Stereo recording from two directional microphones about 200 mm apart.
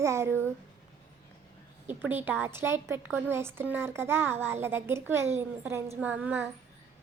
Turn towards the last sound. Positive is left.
turn(degrees=-10)  # may be behind; listen again after turning